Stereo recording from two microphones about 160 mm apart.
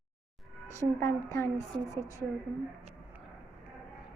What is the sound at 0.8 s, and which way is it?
Speech, 15° left (ahead or behind).